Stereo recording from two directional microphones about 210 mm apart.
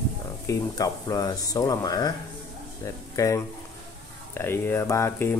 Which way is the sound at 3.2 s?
15° left (ahead or behind).